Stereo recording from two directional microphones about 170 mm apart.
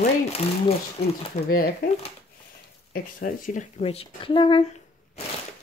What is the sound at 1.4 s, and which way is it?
Speech, 60° left (ahead or behind).